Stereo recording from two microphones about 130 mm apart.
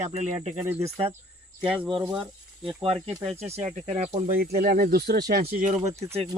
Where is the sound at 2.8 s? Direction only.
45° right (ahead or behind); by 4.9 s 85° right.